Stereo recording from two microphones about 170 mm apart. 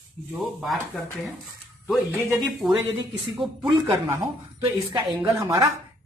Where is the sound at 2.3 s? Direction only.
Centre (ahead or behind).